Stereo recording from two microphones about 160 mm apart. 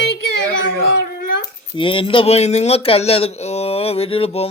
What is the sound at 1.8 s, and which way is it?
Speech, 35° left (ahead or behind).